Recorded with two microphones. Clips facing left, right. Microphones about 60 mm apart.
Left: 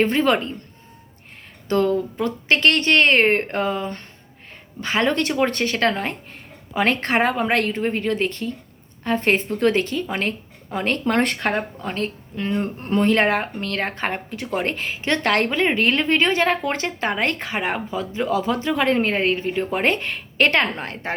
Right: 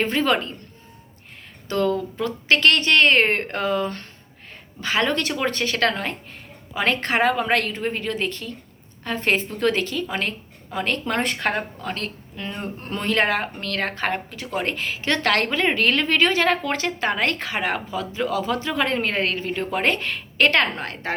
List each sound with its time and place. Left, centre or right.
0.0 s speech: left
1.6 s speech: left
11.3 s speech: left